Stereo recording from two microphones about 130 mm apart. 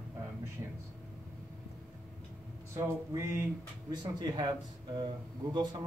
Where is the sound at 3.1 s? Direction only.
25° right (ahead or behind).